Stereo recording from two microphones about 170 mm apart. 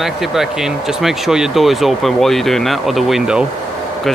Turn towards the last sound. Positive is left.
turn(degrees=-5)  # may be behind; listen again after turning